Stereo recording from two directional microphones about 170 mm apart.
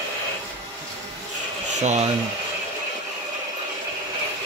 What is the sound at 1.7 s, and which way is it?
Speech, 45° right (ahead or behind).